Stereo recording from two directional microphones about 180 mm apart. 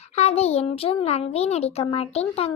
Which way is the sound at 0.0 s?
35° left (ahead or behind).